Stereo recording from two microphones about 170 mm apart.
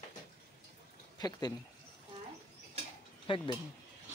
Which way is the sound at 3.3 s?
30° left (ahead or behind).